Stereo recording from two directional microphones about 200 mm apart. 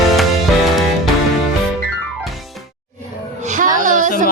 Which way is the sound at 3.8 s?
40° right (ahead or behind).